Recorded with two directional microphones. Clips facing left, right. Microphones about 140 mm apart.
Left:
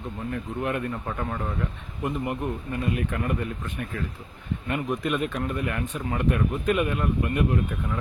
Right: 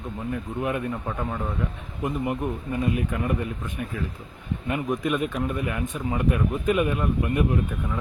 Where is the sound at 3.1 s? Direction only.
5° right (ahead or behind).